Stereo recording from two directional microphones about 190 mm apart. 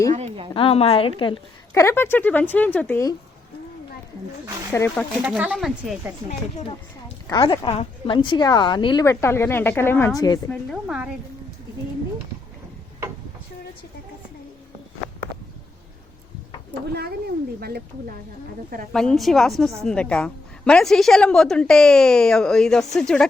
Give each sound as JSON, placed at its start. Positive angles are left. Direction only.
{"t": 0.1, "sound": "a sound", "side_deg": -35}
{"t": 0.5, "sound": "a woman's voice", "side_deg": 30}
{"t": 1.7, "sound": "speech", "side_deg": 15}
{"t": 4.7, "sound": "speech", "side_deg": 10}
{"t": 5.2, "sound": "a woman's voice", "side_deg": -5}
{"t": 7.3, "sound": "a woman's voice", "side_deg": 25}
{"t": 10.5, "sound": "a woman's voice", "side_deg": 0}
{"t": 17.6, "sound": "speech", "side_deg": -55}
{"t": 19.1, "sound": "a woman's voice", "side_deg": 0}